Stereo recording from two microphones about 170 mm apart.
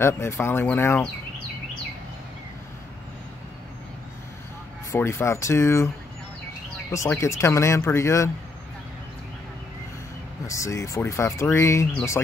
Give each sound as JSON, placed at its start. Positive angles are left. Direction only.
{"t": 0.0, "sound": "speech", "side_deg": 15}
{"t": 4.9, "sound": "speech", "side_deg": 15}
{"t": 6.9, "sound": "speech", "side_deg": 15}
{"t": 10.4, "sound": "speech", "side_deg": 20}